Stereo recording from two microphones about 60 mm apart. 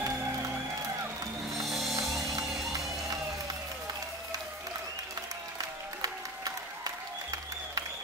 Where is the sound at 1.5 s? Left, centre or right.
Centre.